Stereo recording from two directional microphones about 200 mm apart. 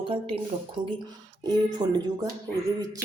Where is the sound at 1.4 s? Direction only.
20° right (ahead or behind).